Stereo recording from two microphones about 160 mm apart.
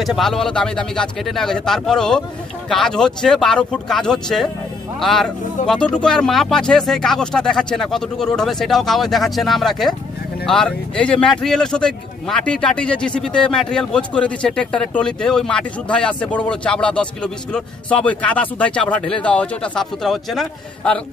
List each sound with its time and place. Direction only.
0.0 s speech: centre (ahead or behind)
5.6 s speech: 50° left (ahead or behind)
5.9 s speech: 5° left (ahead or behind)